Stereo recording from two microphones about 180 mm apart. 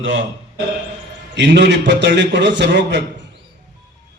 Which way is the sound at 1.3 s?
70° right (ahead or behind).